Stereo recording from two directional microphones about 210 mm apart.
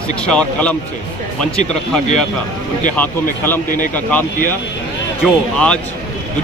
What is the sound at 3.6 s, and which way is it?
Speech, 40° left (ahead or behind).